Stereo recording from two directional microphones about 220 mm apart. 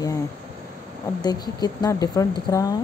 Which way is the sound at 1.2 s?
20° left (ahead or behind).